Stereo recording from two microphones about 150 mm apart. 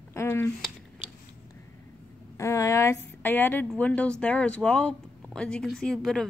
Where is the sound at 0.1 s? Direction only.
15° left (ahead or behind).